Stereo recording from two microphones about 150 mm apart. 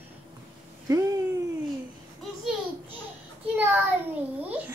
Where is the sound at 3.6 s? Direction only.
15° right (ahead or behind).